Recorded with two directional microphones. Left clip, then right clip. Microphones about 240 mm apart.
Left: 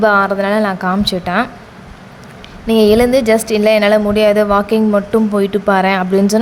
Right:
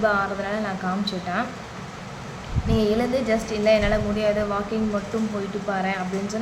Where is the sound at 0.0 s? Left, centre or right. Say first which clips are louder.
Left 11 dB; left.